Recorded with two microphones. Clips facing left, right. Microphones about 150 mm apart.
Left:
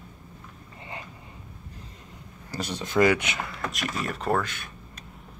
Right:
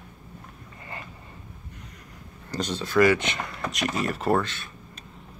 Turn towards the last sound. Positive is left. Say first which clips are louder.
# right 3 dB
turn(degrees=0)  # may be behind; listen again after turning